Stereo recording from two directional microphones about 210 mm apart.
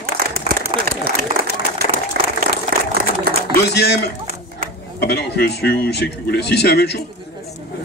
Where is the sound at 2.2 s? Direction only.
45° right (ahead or behind).